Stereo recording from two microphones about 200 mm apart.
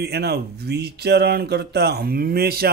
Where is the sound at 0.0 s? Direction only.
55° right (ahead or behind).